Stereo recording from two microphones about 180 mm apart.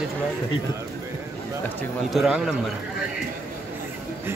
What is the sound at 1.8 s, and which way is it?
Speech, centre (ahead or behind).